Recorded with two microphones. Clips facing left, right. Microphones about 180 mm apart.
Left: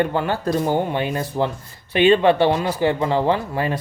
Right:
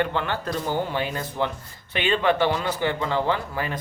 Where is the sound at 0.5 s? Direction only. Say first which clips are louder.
Left 6 dB; 20° left (ahead or behind).